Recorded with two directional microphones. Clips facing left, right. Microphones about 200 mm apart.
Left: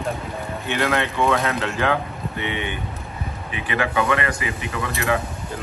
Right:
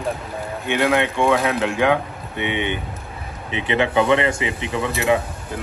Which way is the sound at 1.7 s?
15° right (ahead or behind).